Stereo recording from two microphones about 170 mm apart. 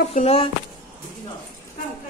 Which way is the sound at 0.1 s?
35° left (ahead or behind).